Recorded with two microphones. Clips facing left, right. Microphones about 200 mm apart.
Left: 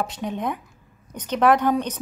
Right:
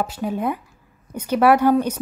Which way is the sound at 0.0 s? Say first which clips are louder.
Right 3 dB; 5° right (ahead or behind).